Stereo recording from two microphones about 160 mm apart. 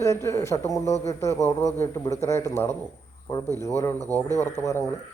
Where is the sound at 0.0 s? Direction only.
20° left (ahead or behind).